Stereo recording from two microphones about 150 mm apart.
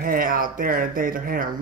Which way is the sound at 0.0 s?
70° right (ahead or behind).